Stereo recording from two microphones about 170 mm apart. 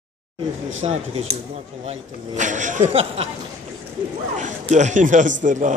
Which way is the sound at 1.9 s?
45° right (ahead or behind).